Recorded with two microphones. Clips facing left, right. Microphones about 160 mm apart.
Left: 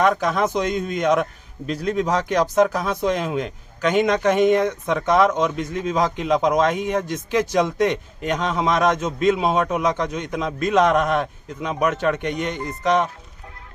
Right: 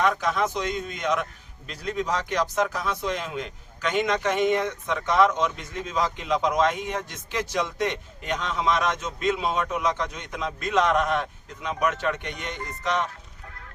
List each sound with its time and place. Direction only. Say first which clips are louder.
0.0 s a man's voice: left 5 dB; 45° left (ahead or behind)